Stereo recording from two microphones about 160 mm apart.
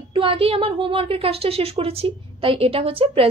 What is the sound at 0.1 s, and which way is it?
A woman's voice, 35° right (ahead or behind).